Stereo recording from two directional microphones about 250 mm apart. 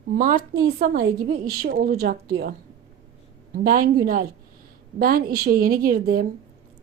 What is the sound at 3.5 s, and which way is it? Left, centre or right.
Speech, right.